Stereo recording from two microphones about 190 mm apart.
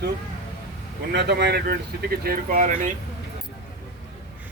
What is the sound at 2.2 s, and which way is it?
Speech, 45° right (ahead or behind).